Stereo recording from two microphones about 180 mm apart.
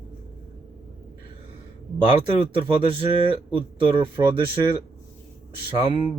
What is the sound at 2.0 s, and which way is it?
Speech, 30° right (ahead or behind).